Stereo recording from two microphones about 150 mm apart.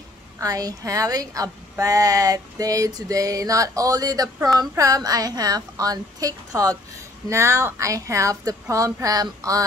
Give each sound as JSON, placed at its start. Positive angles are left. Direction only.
{"t": 0.4, "sound": "speech", "side_deg": -25}